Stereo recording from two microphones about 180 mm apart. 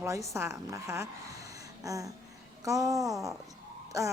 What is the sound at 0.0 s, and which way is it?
Mantra, 15° right (ahead or behind).